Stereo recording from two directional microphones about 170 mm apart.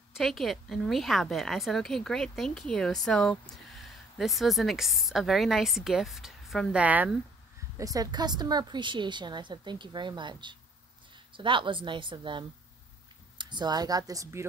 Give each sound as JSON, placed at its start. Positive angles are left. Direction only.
{"t": 0.2, "sound": "a woman's voice", "side_deg": 0}
{"t": 7.7, "sound": "a woman's voice", "side_deg": -20}